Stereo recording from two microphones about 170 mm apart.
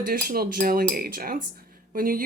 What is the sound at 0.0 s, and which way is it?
Speech, 60° right (ahead or behind).